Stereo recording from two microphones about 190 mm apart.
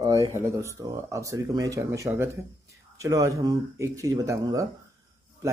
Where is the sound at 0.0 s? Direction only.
20° right (ahead or behind).